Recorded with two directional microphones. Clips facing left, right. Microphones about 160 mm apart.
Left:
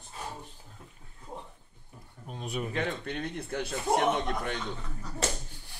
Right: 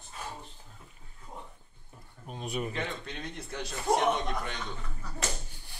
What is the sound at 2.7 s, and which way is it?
A man's voice, 60° left (ahead or behind).